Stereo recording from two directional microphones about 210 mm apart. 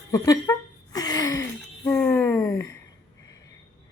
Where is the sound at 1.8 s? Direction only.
5° left (ahead or behind).